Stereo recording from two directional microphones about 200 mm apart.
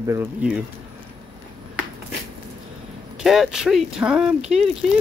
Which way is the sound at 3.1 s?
Centre (ahead or behind).